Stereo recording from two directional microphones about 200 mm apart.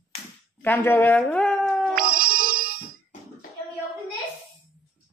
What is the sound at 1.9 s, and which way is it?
Music, 45° right (ahead or behind).